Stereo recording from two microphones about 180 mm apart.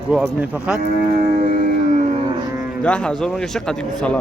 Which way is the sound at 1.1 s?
50° right (ahead or behind).